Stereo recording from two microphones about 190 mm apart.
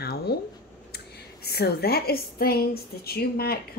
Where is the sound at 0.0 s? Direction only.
55° left (ahead or behind).